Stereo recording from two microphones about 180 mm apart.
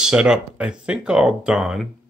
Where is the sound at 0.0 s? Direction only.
5° right (ahead or behind).